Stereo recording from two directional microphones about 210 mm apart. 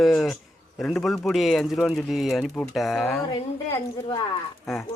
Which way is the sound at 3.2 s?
15° left (ahead or behind).